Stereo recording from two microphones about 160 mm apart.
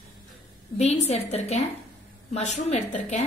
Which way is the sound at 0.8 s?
40° left (ahead or behind).